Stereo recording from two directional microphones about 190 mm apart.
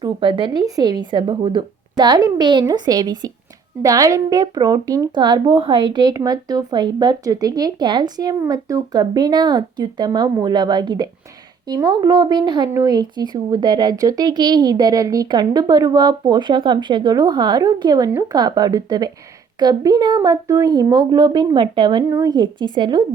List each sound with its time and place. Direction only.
0.0 s speech: 25° right (ahead or behind)